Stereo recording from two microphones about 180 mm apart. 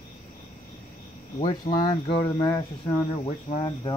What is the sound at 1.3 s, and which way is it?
Cricket, 35° left (ahead or behind).